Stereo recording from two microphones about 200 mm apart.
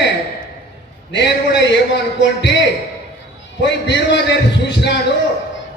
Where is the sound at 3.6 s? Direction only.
60° left (ahead or behind).